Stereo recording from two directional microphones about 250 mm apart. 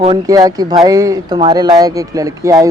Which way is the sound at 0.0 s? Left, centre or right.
Centre.